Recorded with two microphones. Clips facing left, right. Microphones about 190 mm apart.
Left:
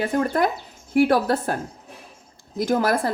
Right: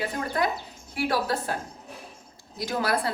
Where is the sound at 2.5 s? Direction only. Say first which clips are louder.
Left 6 dB; 50° left (ahead or behind).